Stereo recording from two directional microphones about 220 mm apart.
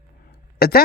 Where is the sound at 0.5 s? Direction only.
45° left (ahead or behind).